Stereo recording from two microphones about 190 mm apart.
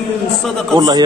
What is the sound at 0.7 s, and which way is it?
Speech, 20° right (ahead or behind).